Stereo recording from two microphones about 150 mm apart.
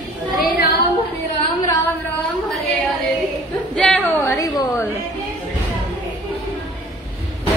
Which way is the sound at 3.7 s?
5° left (ahead or behind).